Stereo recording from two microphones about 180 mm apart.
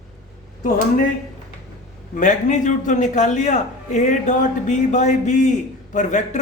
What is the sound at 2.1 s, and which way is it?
Speech, 45° left (ahead or behind).